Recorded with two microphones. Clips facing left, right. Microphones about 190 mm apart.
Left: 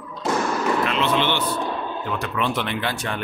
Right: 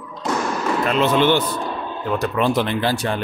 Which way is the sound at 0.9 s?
45° right (ahead or behind).